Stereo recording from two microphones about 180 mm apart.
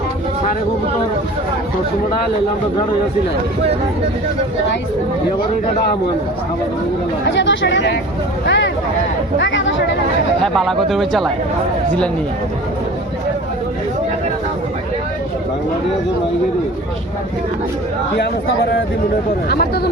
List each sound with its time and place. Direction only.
7.3 s speech: 85° left
10.4 s speech: centre (ahead or behind)
19.5 s speech: 60° left (ahead or behind)